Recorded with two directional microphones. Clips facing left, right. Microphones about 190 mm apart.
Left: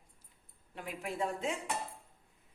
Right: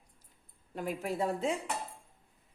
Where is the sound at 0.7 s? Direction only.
40° right (ahead or behind).